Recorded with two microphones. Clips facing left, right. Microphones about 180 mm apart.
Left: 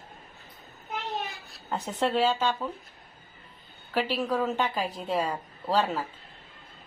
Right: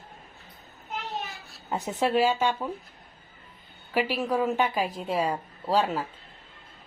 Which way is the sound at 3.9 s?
10° right (ahead or behind).